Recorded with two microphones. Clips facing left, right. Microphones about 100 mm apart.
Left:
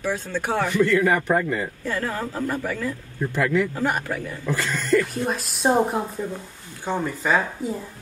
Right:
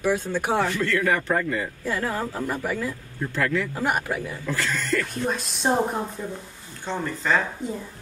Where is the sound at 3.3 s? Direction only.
15° left (ahead or behind).